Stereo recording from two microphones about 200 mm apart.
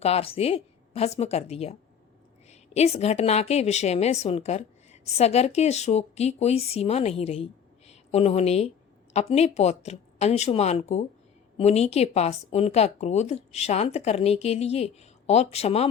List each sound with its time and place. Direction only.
0.0 s a woman's voice: 30° left (ahead or behind)